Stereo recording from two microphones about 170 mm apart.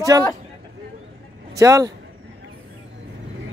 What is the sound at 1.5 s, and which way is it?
Speech, 20° right (ahead or behind).